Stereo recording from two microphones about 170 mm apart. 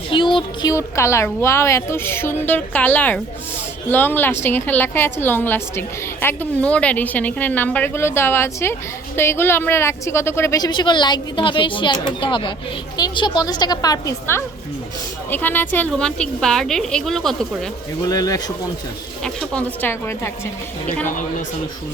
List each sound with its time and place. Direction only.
0.1 s a sound: 30° left (ahead or behind)
0.7 s a woman's voice: 15° left (ahead or behind); by 17.7 s centre (ahead or behind)
18.1 s a woman's voice: 20° left (ahead or behind)
19.2 s a woman's voice: 5° left (ahead or behind)